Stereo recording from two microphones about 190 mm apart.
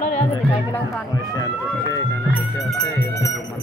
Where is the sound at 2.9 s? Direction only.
15° left (ahead or behind).